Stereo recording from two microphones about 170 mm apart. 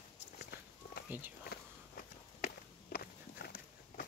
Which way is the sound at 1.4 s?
65° left (ahead or behind).